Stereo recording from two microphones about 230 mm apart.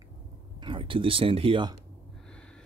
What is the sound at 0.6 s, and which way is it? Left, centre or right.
Speech, right.